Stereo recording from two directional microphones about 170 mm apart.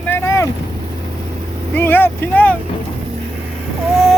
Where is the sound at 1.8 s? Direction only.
10° left (ahead or behind).